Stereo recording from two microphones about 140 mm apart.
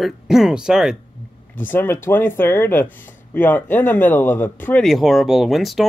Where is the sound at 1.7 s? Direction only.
15° left (ahead or behind).